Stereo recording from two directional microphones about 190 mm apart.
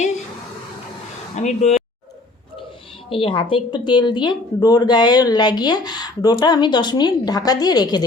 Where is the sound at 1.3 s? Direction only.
35° left (ahead or behind).